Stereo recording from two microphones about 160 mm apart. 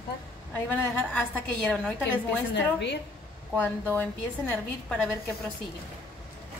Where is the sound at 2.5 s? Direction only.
90° left.